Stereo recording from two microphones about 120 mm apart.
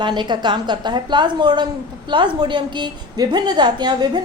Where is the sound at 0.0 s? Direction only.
40° right (ahead or behind).